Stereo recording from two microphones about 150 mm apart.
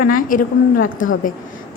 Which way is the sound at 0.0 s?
65° left (ahead or behind).